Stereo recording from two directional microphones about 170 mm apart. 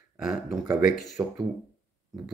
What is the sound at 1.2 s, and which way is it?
Speech, 15° right (ahead or behind).